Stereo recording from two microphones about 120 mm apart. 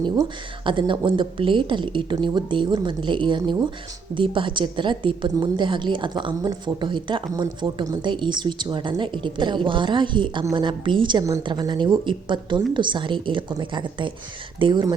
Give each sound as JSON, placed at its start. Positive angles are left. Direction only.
{"t": 0.6, "sound": "a woman's voice", "side_deg": -40}